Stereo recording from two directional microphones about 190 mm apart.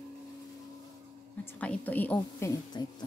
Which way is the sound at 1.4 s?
10° left (ahead or behind).